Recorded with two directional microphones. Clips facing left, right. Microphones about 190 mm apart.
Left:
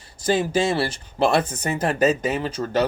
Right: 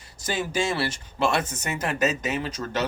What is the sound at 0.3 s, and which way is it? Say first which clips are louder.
Speech: left 3 dB; 30° left (ahead or behind).